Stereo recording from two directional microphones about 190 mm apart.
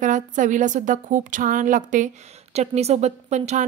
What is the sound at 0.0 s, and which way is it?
A woman's voice, 40° right (ahead or behind).